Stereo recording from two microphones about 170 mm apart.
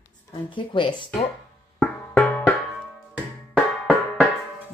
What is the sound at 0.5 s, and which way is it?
Speech, 30° left (ahead or behind).